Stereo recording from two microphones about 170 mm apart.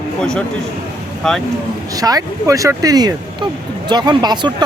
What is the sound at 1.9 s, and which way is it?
Speech, 20° right (ahead or behind).